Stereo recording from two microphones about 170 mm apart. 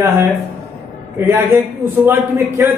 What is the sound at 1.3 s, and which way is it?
A man's voice, 15° right (ahead or behind).